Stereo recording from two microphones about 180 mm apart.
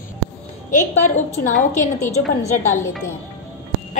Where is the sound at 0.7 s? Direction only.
45° left (ahead or behind).